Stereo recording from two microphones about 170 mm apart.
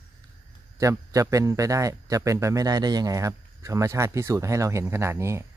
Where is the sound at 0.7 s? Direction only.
20° right (ahead or behind).